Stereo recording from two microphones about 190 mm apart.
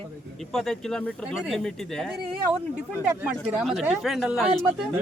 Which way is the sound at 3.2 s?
5° right (ahead or behind).